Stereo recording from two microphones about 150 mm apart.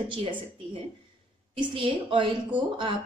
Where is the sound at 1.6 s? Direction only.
35° right (ahead or behind).